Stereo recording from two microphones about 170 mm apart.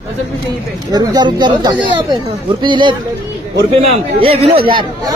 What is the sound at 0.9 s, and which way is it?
Speech, 25° right (ahead or behind).